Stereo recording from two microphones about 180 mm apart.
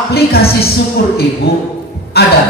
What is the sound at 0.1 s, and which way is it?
Speech, 60° left (ahead or behind).